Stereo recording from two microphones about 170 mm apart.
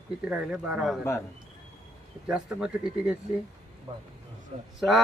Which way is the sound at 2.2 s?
5° right (ahead or behind).